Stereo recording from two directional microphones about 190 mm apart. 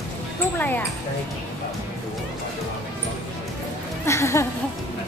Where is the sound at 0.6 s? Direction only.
10° left (ahead or behind).